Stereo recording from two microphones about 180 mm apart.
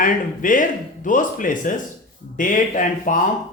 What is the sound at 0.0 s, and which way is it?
Speech, 45° left (ahead or behind).